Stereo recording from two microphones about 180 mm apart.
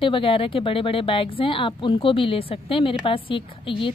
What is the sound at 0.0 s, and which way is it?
Speech, 30° left (ahead or behind).